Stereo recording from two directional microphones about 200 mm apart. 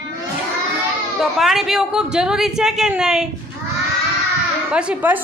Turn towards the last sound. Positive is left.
turn(degrees=-5)  # may be behind; listen again after turning